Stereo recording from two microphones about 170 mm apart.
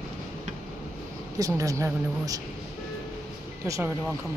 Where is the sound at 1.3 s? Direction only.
20° right (ahead or behind).